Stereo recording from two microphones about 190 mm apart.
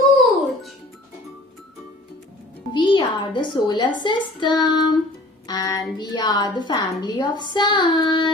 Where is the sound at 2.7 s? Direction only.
25° left (ahead or behind).